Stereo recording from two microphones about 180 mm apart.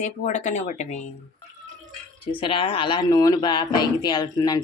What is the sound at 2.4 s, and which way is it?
Speech, 30° left (ahead or behind).